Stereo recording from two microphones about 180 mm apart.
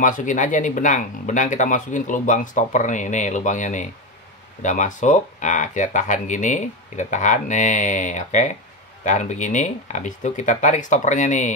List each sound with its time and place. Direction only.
0.0 s speech: 45° left (ahead or behind)